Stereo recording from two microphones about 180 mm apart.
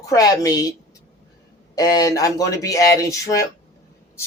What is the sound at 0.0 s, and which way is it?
Speech, 20° left (ahead or behind).